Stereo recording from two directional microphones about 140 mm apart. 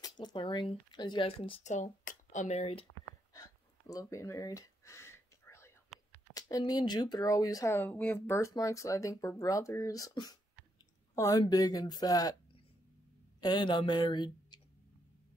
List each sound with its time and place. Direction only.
0.0 s speech: 30° left (ahead or behind)
1.7 s speech: 60° left (ahead or behind)
2.9 s a sound: 25° left (ahead or behind)
6.3 s speech: 25° left (ahead or behind)
13.4 s speech: 30° left (ahead or behind)